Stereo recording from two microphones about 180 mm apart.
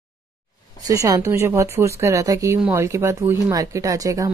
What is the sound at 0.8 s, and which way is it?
Speech, 20° right (ahead or behind).